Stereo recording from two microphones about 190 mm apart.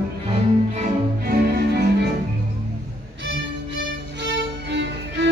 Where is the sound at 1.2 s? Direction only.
55° right (ahead or behind).